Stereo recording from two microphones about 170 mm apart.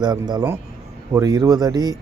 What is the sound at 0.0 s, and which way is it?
Speech, 25° right (ahead or behind).